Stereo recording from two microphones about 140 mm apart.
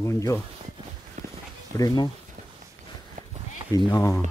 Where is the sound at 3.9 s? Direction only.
20° left (ahead or behind).